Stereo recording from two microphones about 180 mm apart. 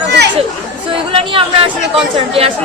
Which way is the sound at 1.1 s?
30° right (ahead or behind).